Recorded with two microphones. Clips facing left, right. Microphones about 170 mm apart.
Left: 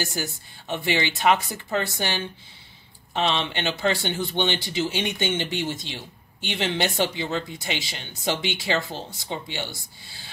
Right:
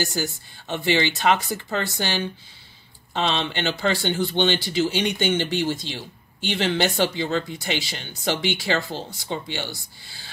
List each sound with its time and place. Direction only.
0.0 s speech: 15° left (ahead or behind)